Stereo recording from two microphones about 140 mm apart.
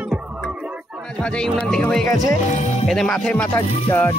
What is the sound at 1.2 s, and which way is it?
Speech, 5° left (ahead or behind).